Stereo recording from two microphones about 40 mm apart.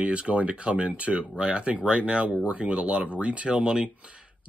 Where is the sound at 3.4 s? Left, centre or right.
Right.